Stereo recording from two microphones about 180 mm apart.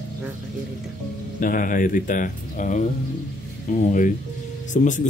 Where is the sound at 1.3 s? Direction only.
50° left (ahead or behind).